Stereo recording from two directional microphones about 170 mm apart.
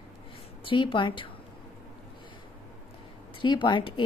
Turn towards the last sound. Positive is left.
turn(degrees=30)  # may be behind; listen again after turning